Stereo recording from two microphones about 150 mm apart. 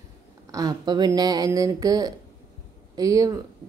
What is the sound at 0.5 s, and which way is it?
Speech, 25° right (ahead or behind).